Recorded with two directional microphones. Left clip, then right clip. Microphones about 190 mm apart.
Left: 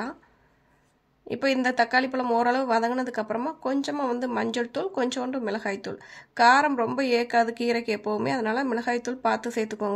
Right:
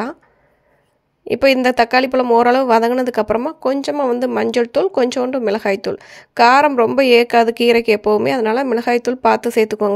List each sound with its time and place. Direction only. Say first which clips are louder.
1.2 s speech: right 12 dB; 45° right (ahead or behind)